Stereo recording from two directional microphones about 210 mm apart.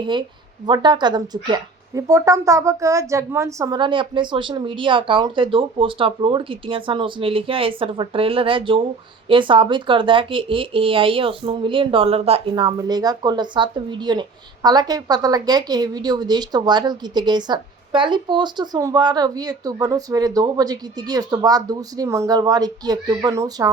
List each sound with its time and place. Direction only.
0.0 s speech: 20° right (ahead or behind)